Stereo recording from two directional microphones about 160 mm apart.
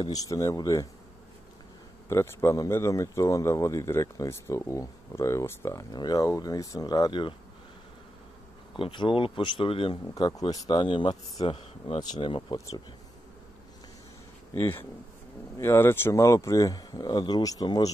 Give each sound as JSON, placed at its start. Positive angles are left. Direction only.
{"t": 0.0, "sound": "speech", "side_deg": 20}
{"t": 2.0, "sound": "speech", "side_deg": 15}
{"t": 8.7, "sound": "speech", "side_deg": 30}
{"t": 14.5, "sound": "speech", "side_deg": 15}